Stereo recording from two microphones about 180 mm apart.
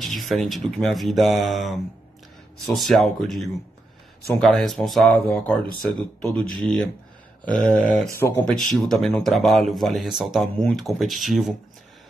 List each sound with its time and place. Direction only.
0.0 s speech: centre (ahead or behind)
8.1 s speech: 15° left (ahead or behind)
8.5 s speech: centre (ahead or behind)